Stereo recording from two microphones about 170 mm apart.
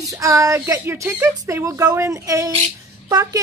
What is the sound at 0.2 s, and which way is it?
Speech, 20° right (ahead or behind).